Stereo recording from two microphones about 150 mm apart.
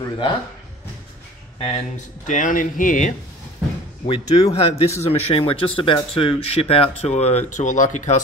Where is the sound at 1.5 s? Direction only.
40° left (ahead or behind).